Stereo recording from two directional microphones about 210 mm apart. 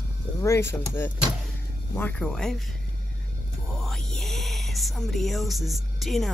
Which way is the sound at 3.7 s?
Centre (ahead or behind).